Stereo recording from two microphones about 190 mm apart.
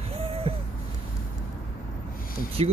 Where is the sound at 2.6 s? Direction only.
30° right (ahead or behind).